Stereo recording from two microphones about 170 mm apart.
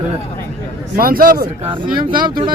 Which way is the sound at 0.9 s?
55° right (ahead or behind).